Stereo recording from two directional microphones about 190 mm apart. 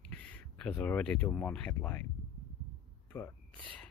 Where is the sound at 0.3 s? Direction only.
5° left (ahead or behind).